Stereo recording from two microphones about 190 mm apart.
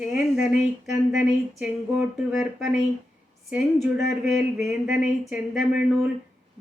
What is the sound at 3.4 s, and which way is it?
Speech, 5° right (ahead or behind).